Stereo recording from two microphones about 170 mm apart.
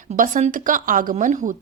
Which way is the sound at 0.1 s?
45° right (ahead or behind).